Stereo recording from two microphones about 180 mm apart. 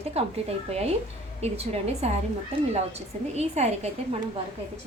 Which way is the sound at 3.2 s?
35° right (ahead or behind).